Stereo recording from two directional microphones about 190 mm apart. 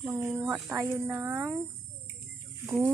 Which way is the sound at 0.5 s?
15° right (ahead or behind).